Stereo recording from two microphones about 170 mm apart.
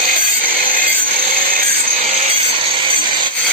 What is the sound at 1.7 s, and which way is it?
Sawing, 35° right (ahead or behind).